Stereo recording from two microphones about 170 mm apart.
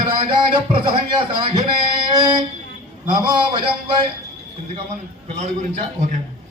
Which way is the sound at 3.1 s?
25° right (ahead or behind).